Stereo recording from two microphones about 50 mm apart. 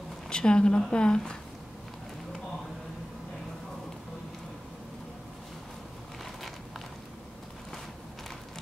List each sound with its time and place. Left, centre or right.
0.3 s a woman's voice: centre